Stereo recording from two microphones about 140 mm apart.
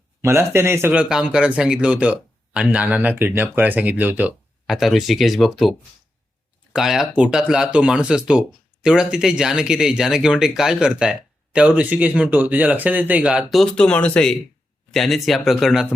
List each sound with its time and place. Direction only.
0.2 s speech: 20° right (ahead or behind)
4.6 s speech: centre (ahead or behind)
6.7 s speech: 5° right (ahead or behind)